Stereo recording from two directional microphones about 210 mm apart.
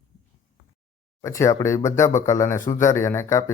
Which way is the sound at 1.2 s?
15° left (ahead or behind).